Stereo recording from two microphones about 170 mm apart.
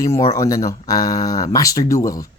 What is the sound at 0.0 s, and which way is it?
Speech, 20° left (ahead or behind).